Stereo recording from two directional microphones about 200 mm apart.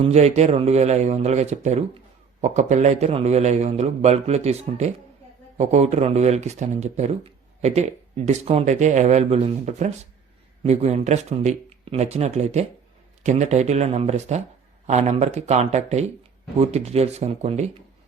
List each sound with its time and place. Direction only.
0.0 s speech: 30° right (ahead or behind)